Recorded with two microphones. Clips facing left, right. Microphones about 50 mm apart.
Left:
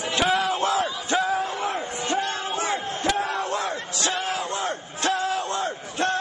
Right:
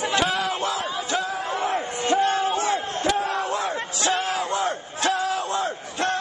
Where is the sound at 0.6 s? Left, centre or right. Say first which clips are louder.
Left 3 dB; left.